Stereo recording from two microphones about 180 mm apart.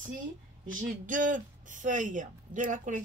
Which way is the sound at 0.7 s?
45° right (ahead or behind).